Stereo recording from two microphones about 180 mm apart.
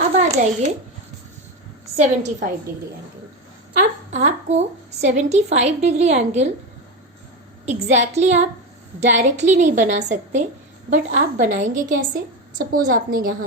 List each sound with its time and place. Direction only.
0.2 s a child's voice: 40° right (ahead or behind)
2.0 s a woman's voice: 40° right (ahead or behind)
4.1 s a woman's voice: 40° right (ahead or behind)
7.6 s a woman's voice: 40° right (ahead or behind)